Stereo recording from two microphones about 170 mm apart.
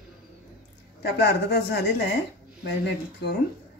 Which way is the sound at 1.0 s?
70° left (ahead or behind).